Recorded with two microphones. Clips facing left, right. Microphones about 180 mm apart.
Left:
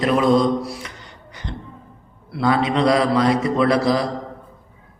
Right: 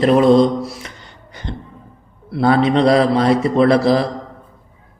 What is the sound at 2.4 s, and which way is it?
A man's voice, 30° right (ahead or behind).